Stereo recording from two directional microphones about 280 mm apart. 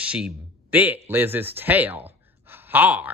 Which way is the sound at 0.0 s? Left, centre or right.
Centre.